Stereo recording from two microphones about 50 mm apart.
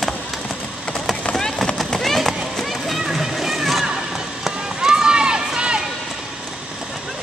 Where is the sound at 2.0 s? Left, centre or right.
Centre.